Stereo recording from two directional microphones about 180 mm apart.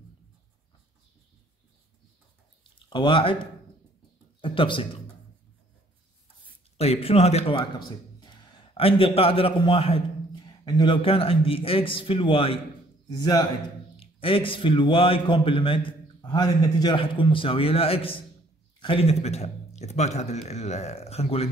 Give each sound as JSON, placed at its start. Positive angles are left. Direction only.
{"t": 2.9, "sound": "a man's voice", "side_deg": 25}
{"t": 4.4, "sound": "a sound", "side_deg": 30}
{"t": 6.8, "sound": "a man's voice", "side_deg": 35}